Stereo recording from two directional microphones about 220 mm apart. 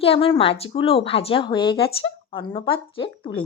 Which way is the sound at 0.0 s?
25° left (ahead or behind).